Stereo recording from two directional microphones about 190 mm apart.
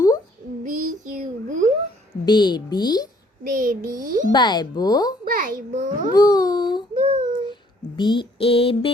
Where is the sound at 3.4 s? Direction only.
45° right (ahead or behind).